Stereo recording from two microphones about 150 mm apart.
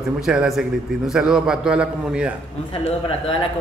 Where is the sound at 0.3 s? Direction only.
5° right (ahead or behind).